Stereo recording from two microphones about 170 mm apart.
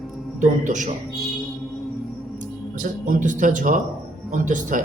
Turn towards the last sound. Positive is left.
turn(degrees=-50)  # may be behind; listen again after turning